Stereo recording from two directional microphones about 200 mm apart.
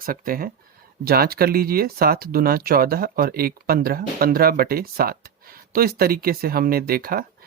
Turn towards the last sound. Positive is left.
turn(degrees=-50)  # may be behind; listen again after turning